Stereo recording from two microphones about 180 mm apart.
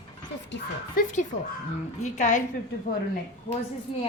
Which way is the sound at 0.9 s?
45° left (ahead or behind).